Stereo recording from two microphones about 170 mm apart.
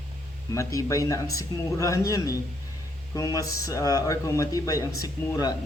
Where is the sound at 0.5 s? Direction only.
20° left (ahead or behind).